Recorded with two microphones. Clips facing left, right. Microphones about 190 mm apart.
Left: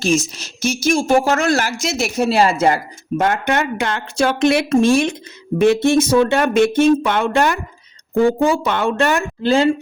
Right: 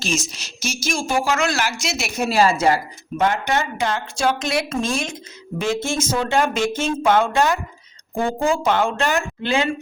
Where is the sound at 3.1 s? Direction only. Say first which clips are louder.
Left 3 dB; 50° left (ahead or behind).